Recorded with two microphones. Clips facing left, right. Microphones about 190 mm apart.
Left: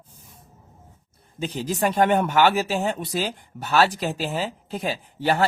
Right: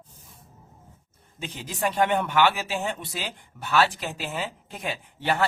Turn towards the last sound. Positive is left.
turn(degrees=35)  # may be behind; listen again after turning